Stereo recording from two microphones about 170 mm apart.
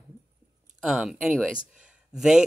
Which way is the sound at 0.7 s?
5° right (ahead or behind).